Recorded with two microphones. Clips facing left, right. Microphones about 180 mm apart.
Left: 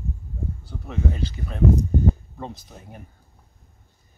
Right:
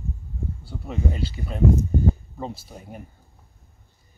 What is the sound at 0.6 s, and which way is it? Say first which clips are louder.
Speech: even; 10° right (ahead or behind).